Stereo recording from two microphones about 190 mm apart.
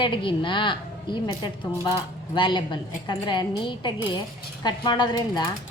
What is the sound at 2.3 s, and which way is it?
Speech, 25° left (ahead or behind).